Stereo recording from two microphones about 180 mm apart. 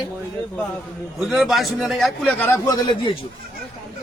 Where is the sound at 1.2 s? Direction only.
Centre (ahead or behind); by 2.8 s 20° left (ahead or behind).